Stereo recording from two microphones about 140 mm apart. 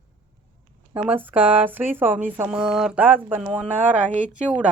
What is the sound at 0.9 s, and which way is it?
Speech, 10° right (ahead or behind).